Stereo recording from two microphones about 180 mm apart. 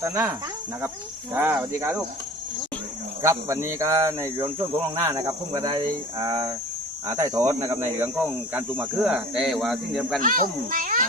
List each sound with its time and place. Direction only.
0.0 s speech: 15° right (ahead or behind)
3.2 s speech: 15° right (ahead or behind)
6.2 s speech: 20° right (ahead or behind); by 10.2 s centre (ahead or behind)
10.2 s a child's voice: 50° right (ahead or behind)